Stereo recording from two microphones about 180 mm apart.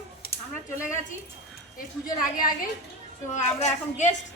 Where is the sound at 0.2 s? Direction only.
55° left (ahead or behind).